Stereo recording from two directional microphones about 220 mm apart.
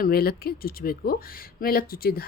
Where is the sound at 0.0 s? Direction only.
45° left (ahead or behind).